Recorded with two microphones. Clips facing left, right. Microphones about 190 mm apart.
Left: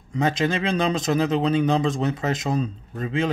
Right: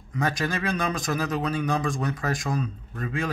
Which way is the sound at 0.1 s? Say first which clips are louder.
Left 5 dB; 25° left (ahead or behind).